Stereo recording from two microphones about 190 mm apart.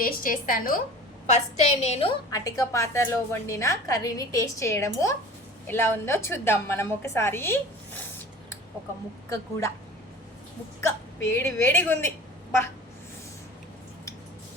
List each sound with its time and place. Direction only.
0.0 s a woman's voice: 45° left (ahead or behind)
1.3 s a woman's voice: 35° left (ahead or behind)
2.3 s a woman's voice: 15° left (ahead or behind)
9.3 s a woman's voice: 15° left (ahead or behind)
10.8 s a woman's voice: 15° left (ahead or behind)